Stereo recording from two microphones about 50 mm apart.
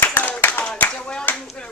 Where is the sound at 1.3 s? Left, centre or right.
Left.